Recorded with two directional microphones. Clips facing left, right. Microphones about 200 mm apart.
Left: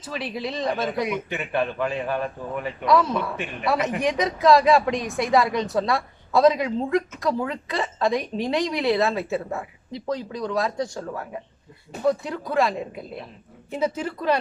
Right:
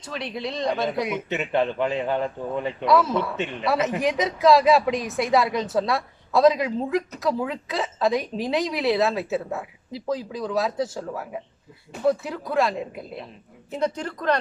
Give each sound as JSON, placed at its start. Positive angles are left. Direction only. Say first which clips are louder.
{"t": 0.0, "sound": "speech", "louder": "left 1 dB", "side_deg": 5}
{"t": 1.3, "sound": "a man's voice", "louder": "right 2 dB", "side_deg": -20}
{"t": 2.8, "sound": "speech", "louder": "even", "side_deg": 0}
{"t": 3.3, "sound": "a man's voice", "louder": "right 3 dB", "side_deg": -20}
{"t": 3.7, "sound": "speech", "louder": "even", "side_deg": 0}